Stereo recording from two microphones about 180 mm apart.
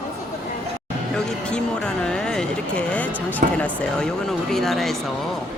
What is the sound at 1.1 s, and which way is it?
Speech, 5° left (ahead or behind).